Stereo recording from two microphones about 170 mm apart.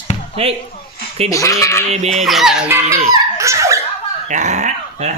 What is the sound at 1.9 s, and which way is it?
Music, 40° right (ahead or behind).